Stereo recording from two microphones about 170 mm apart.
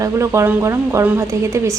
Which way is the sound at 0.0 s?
15° right (ahead or behind).